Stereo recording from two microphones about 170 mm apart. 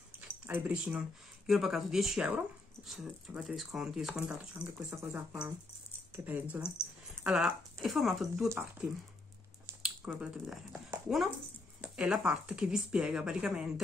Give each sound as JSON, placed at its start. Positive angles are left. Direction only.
{"t": 0.5, "sound": "speech", "side_deg": -10}
{"t": 4.7, "sound": "speech", "side_deg": -15}
{"t": 6.8, "sound": "speech", "side_deg": 15}
{"t": 7.2, "sound": "speech", "side_deg": -5}
{"t": 8.5, "sound": "speech", "side_deg": -10}
{"t": 9.8, "sound": "speech", "side_deg": -5}
{"t": 11.8, "sound": "speech", "side_deg": -5}